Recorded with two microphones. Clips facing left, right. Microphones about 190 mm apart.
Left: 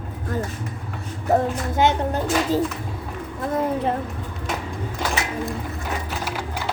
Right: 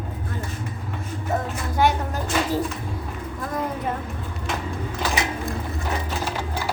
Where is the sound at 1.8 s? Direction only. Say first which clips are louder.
Left 2 dB; 20° left (ahead or behind).